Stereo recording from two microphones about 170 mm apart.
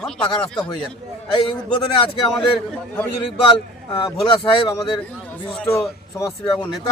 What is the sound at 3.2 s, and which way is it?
A man's voice, 30° left (ahead or behind).